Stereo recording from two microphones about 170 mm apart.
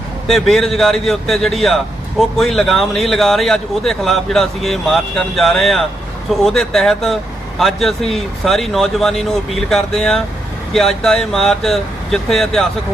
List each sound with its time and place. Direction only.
0.3 s a man's voice: centre (ahead or behind)